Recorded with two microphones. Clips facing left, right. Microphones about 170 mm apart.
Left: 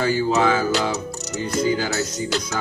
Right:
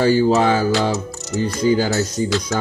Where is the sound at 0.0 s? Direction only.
35° right (ahead or behind).